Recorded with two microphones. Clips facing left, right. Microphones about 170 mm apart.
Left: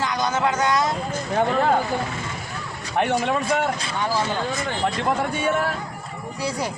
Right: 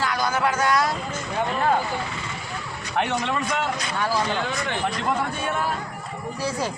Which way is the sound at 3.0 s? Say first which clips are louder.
Left 4 dB; 55° left (ahead or behind).